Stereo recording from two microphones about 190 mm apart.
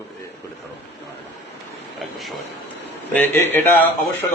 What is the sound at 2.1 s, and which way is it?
Speech, centre (ahead or behind).